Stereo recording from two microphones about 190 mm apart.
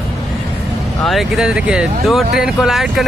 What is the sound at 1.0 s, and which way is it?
Speech, centre (ahead or behind).